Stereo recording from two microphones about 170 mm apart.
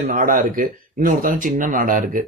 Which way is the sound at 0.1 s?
55° right (ahead or behind).